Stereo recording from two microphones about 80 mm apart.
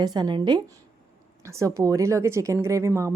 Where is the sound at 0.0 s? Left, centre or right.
Right.